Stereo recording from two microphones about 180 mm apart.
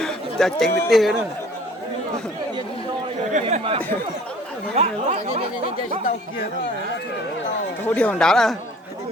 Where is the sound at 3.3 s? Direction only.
40° right (ahead or behind).